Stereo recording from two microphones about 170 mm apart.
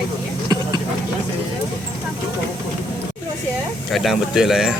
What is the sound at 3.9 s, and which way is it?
Speech, centre (ahead or behind).